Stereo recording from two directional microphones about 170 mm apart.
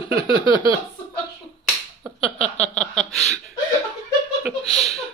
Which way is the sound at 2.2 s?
35° left (ahead or behind).